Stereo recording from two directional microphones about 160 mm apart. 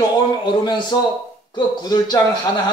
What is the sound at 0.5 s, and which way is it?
Speech, 30° left (ahead or behind).